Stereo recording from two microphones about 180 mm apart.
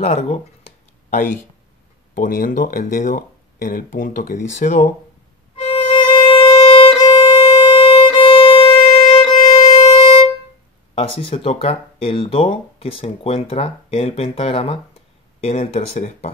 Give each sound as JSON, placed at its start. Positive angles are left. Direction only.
{"t": 0.0, "sound": "a sound", "side_deg": 40}
{"t": 2.1, "sound": "speech", "side_deg": 50}
{"t": 5.6, "sound": "violin", "side_deg": 30}
{"t": 11.0, "sound": "speech", "side_deg": 30}